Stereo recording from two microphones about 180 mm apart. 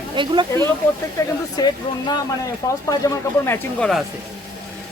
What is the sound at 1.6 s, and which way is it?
Speech, 25° left (ahead or behind).